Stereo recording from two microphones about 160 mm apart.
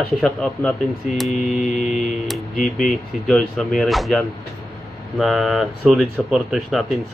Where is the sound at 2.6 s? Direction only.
Centre (ahead or behind).